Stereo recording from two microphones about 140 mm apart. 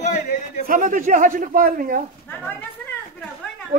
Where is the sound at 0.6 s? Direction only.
75° right (ahead or behind).